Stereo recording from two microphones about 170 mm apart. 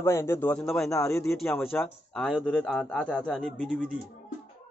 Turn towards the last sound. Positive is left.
turn(degrees=5)  # may be behind; listen again after turning